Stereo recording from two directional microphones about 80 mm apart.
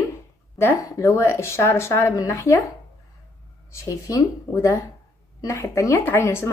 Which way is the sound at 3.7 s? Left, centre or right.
Left.